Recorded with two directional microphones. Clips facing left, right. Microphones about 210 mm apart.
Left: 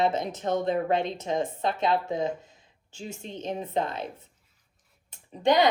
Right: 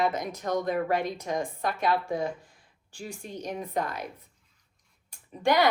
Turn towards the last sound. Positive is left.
turn(degrees=20)  # may be behind; listen again after turning